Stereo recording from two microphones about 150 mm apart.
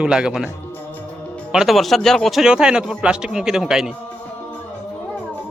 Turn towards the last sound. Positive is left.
turn(degrees=-5)  # may be behind; listen again after turning